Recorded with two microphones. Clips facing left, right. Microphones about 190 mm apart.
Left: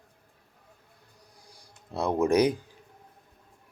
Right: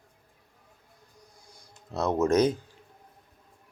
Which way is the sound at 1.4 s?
35° left (ahead or behind).